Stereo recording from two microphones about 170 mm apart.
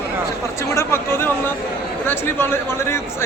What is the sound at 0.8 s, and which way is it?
A man's voice, 15° left (ahead or behind).